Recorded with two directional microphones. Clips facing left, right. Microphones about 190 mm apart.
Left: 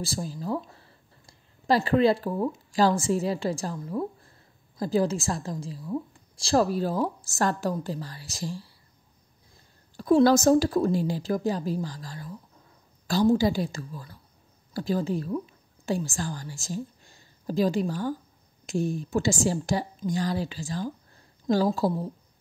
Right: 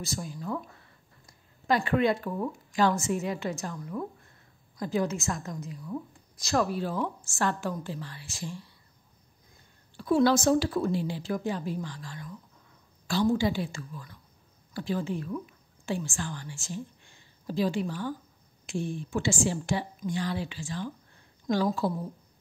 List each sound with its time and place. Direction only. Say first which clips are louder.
0.0 s a woman's voice: left 3 dB; 30° left (ahead or behind)
9.9 s a woman's voice: left 4 dB; 40° left (ahead or behind)